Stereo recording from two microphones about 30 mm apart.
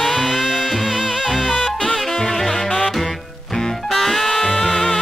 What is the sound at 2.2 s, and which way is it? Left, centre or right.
Music, centre.